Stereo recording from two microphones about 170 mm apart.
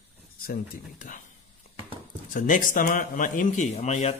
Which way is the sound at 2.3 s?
50° left (ahead or behind).